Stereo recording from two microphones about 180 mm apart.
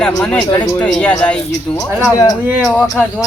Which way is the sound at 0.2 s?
5° left (ahead or behind).